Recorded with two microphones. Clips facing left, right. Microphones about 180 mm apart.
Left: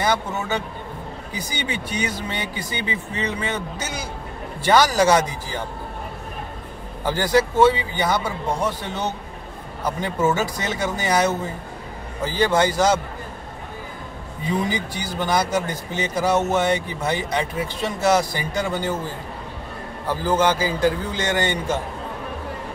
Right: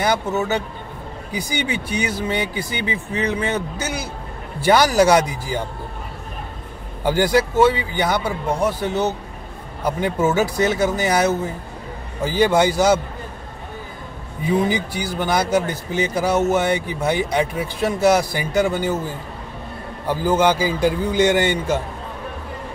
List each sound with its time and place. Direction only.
1.3 s speech: 10° right (ahead or behind)
7.1 s speech: 10° right (ahead or behind)
14.4 s speech: 10° right (ahead or behind)
20.1 s speech: 10° right (ahead or behind)